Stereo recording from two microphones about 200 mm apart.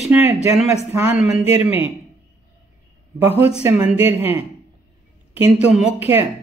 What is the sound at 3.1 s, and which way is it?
Speech, 10° right (ahead or behind).